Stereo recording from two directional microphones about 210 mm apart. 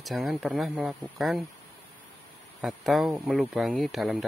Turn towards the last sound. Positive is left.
turn(degrees=0)  # may be behind; listen again after turning